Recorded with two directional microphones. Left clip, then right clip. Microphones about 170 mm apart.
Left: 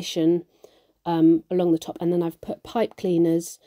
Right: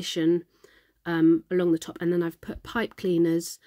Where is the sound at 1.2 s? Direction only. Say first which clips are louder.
Left 2 dB; 30° right (ahead or behind).